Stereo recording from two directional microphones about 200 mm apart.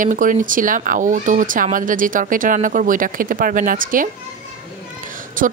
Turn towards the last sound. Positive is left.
turn(degrees=-40)  # may be behind; listen again after turning